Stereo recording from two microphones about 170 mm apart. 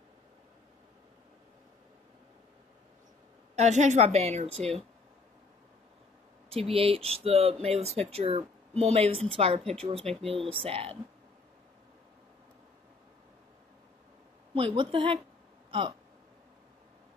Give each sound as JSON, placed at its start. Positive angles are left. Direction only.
{"t": 3.5, "sound": "speech", "side_deg": -45}
{"t": 6.5, "sound": "speech", "side_deg": -35}
{"t": 14.5, "sound": "speech", "side_deg": -35}